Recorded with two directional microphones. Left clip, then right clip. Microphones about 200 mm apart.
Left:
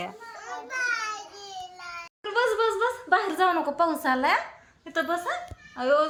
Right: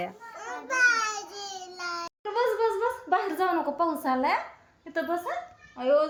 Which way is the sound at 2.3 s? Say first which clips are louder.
Left 2 dB; centre (ahead or behind).